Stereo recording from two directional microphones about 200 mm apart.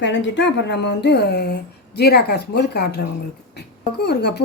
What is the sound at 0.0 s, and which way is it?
A woman's voice, 60° left (ahead or behind).